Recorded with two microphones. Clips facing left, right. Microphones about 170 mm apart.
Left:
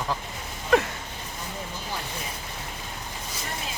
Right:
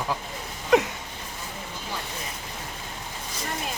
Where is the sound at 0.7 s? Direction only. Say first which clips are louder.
Right 2 dB; 15° right (ahead or behind).